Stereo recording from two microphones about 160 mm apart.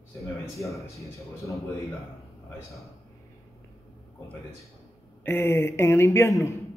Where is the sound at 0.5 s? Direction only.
20° left (ahead or behind).